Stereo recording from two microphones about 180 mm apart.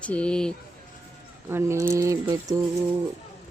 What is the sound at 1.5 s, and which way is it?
Speech, 15° right (ahead or behind).